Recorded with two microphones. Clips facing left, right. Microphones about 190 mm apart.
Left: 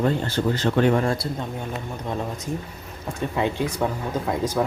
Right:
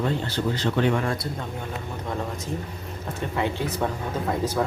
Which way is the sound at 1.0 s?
30° left (ahead or behind).